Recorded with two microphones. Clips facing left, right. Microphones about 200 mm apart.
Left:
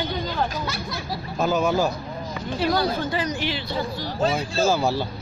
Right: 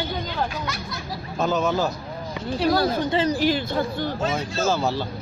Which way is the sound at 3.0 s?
30° right (ahead or behind).